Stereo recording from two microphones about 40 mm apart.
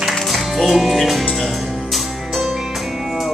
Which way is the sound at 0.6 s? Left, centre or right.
Centre.